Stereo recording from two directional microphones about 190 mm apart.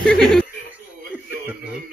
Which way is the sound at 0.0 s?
5° left (ahead or behind).